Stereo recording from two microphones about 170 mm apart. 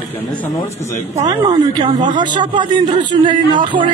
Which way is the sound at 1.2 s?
25° right (ahead or behind).